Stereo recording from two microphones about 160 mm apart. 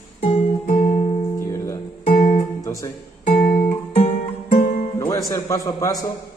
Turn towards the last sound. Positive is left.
turn(degrees=20)  # may be behind; listen again after turning